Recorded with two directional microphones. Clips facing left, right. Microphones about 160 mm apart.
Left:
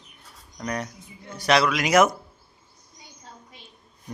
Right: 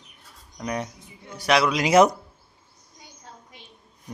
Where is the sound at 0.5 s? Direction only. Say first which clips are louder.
Right 1 dB; 15° right (ahead or behind).